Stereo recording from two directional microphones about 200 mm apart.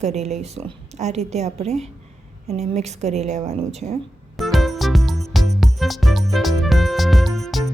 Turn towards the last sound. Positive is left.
turn(degrees=0)  # may be behind; listen again after turning